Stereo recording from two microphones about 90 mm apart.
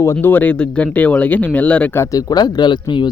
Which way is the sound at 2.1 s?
50° left (ahead or behind).